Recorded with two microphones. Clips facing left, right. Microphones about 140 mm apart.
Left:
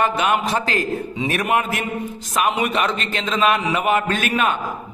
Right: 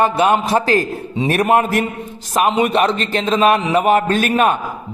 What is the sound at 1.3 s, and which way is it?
Speech, 40° right (ahead or behind).